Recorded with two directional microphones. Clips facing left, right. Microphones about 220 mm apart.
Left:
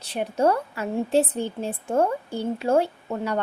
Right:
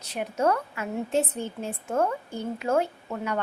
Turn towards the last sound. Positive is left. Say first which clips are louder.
# left 3 dB
turn(degrees=35)  # may be behind; listen again after turning